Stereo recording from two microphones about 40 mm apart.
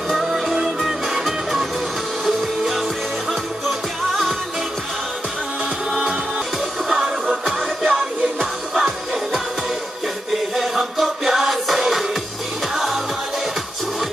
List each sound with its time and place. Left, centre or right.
0.1 s music: centre
5.9 s music: centre